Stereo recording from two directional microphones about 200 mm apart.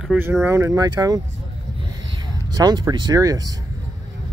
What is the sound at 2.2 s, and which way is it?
Speech, 20° right (ahead or behind).